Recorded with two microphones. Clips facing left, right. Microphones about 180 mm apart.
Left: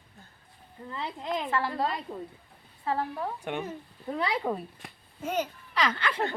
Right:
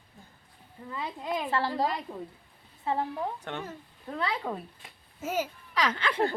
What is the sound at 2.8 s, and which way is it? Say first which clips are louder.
Speech: even; 20° right (ahead or behind).